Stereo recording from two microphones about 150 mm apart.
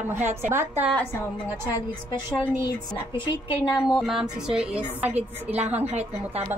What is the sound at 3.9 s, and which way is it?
A woman's voice, centre (ahead or behind).